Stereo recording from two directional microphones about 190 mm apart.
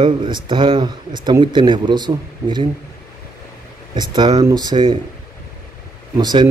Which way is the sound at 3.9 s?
25° right (ahead or behind).